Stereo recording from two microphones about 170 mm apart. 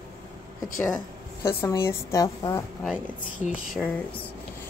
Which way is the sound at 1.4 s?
15° left (ahead or behind).